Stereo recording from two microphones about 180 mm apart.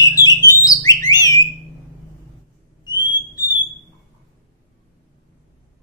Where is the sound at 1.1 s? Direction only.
20° left (ahead or behind).